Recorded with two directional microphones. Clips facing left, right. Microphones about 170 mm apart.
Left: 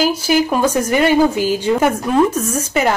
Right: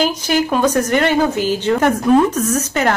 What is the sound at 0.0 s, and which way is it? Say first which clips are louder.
Speech: left 2 dB; 10° left (ahead or behind).